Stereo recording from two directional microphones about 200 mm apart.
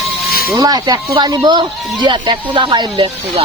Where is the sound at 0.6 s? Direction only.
20° right (ahead or behind).